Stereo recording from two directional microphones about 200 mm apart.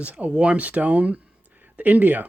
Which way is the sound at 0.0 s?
5° right (ahead or behind).